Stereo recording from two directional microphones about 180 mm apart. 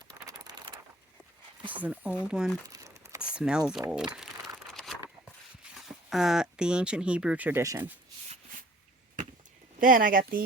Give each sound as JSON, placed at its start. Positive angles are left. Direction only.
{"t": 0.1, "sound": "vehicle", "side_deg": -20}
{"t": 1.6, "sound": "speech", "side_deg": -10}
{"t": 2.6, "sound": "crumpling", "side_deg": -20}
{"t": 3.3, "sound": "speech", "side_deg": -5}
{"t": 4.7, "sound": "a sound", "side_deg": 0}
{"t": 5.7, "sound": "speech", "side_deg": 0}
{"t": 9.8, "sound": "speech", "side_deg": -50}